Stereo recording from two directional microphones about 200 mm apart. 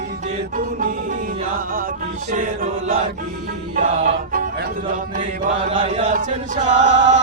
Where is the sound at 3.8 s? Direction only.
45° right (ahead or behind).